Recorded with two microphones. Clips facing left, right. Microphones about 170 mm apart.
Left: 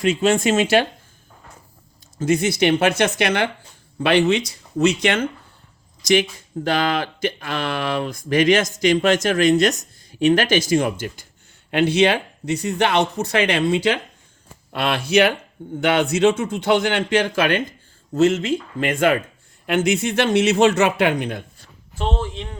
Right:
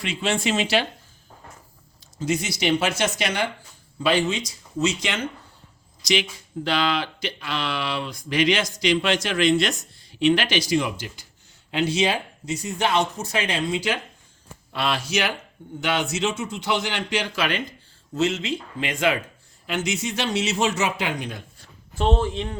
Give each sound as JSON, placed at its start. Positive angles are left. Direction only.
{"t": 0.0, "sound": "speech", "side_deg": 45}
{"t": 2.1, "sound": "speech", "side_deg": 55}
{"t": 11.7, "sound": "speech", "side_deg": 60}